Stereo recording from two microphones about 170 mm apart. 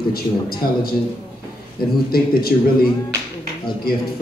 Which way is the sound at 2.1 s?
65° left (ahead or behind).